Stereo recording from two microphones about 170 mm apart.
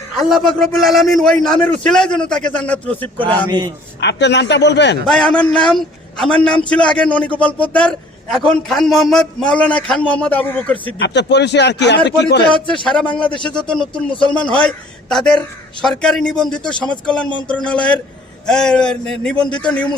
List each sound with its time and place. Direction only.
0.2 s a man's voice: centre (ahead or behind)
4.0 s speech: 90° left
5.0 s a man's voice: centre (ahead or behind)
11.0 s speech: 90° left
12.8 s a man's voice: 5° left (ahead or behind)